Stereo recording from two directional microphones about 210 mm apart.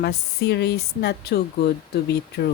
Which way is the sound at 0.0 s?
55° left (ahead or behind).